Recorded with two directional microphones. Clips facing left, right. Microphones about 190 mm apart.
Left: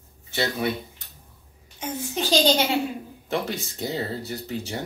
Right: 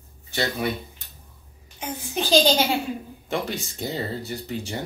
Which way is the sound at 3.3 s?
5° left (ahead or behind).